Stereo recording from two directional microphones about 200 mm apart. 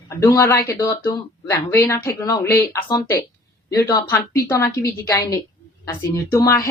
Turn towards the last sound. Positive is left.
turn(degrees=15)  # may be behind; listen again after turning